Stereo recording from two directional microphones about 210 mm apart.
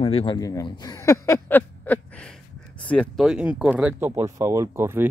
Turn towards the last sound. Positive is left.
turn(degrees=-10)  # may be behind; listen again after turning